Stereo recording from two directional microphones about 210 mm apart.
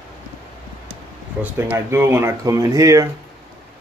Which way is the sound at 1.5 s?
10° right (ahead or behind).